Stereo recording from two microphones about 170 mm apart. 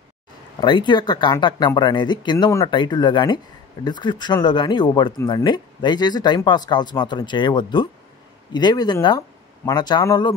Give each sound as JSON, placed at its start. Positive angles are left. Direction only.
{"t": 0.6, "sound": "speech", "side_deg": 25}